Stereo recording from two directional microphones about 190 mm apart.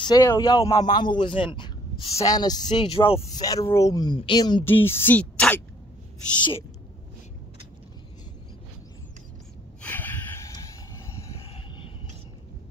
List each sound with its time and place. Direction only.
0.0 s speech: 20° left (ahead or behind)
3.3 s speech: 20° left (ahead or behind)
4.6 s speech: 10° left (ahead or behind)
9.8 s a sound: 10° left (ahead or behind)